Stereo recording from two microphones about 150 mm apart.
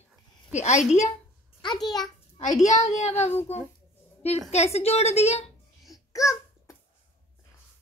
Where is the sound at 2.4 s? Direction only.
50° left (ahead or behind).